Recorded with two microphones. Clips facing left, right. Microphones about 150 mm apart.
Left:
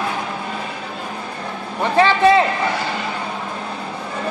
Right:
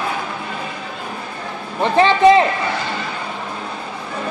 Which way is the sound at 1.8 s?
20° right (ahead or behind).